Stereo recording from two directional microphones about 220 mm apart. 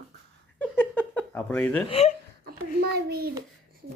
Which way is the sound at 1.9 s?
25° left (ahead or behind).